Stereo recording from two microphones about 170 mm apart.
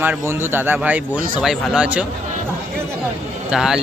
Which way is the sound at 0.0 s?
10° right (ahead or behind).